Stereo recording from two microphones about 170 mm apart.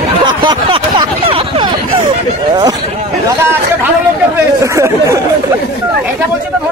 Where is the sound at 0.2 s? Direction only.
25° right (ahead or behind).